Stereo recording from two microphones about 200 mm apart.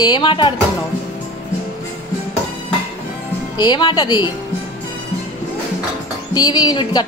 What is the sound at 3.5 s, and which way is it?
Speech, 20° left (ahead or behind).